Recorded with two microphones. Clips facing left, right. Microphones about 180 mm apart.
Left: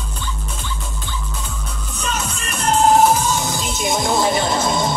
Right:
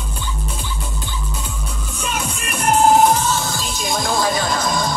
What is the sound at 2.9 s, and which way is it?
Music, 5° left (ahead or behind).